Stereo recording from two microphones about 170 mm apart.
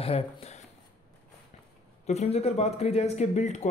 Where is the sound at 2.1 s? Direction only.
40° left (ahead or behind).